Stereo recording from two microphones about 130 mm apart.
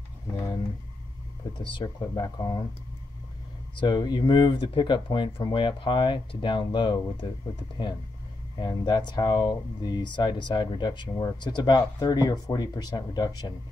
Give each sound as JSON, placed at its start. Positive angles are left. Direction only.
{"t": 1.6, "sound": "speech", "side_deg": 40}
{"t": 3.7, "sound": "speech", "side_deg": 35}
{"t": 8.5, "sound": "speech", "side_deg": 35}